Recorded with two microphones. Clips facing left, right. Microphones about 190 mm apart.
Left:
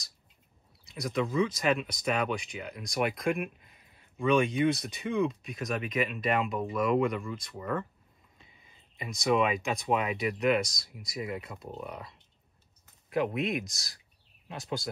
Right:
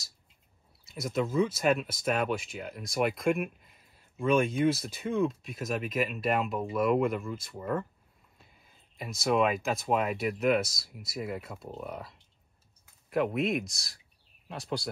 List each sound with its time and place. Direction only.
0.8 s speech: centre (ahead or behind)